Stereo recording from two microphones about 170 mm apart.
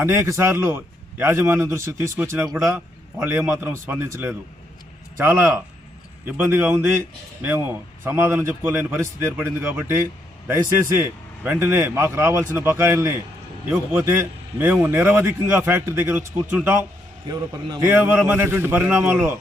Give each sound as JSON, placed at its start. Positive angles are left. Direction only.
{"t": 0.0, "sound": "a man's voice", "side_deg": -15}
{"t": 17.2, "sound": "a man's voice", "side_deg": -25}
{"t": 17.8, "sound": "a man's voice", "side_deg": -10}